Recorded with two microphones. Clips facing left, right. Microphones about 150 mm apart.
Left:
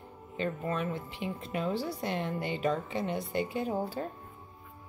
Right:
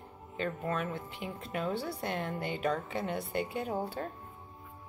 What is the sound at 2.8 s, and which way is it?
Music, centre (ahead or behind).